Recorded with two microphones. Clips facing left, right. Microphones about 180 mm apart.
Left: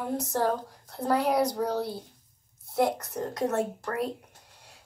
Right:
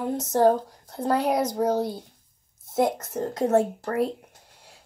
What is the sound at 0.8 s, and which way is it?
Speech, 20° right (ahead or behind).